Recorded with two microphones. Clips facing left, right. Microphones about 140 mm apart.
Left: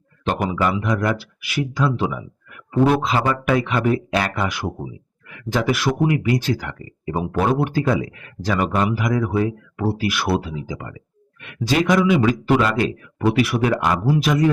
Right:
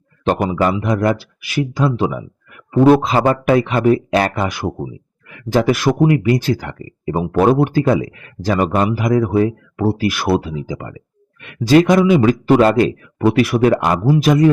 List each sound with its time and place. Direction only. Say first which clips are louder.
0.3 s speech: right 5 dB; 35° right (ahead or behind)